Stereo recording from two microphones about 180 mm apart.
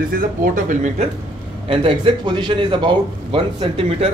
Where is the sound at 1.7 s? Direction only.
30° right (ahead or behind).